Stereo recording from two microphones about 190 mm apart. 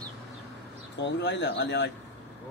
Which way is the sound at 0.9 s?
65° left (ahead or behind).